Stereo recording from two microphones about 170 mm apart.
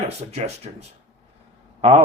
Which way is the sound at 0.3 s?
40° right (ahead or behind).